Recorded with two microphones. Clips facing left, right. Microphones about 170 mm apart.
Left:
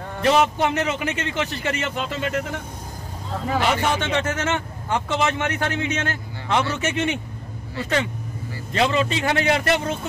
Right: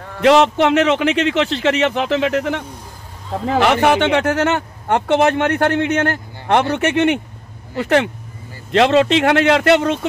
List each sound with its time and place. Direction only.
0.2 s a man's voice: 90° right; by 9.9 s 70° right (ahead or behind)